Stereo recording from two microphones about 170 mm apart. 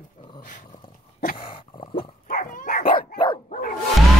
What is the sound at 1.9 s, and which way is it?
Dog, 55° left (ahead or behind).